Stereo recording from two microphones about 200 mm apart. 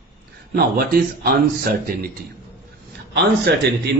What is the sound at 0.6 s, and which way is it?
Speech, 50° right (ahead or behind).